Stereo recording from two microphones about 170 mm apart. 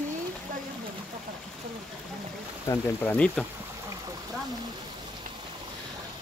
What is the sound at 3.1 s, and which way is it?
Speech, 5° left (ahead or behind).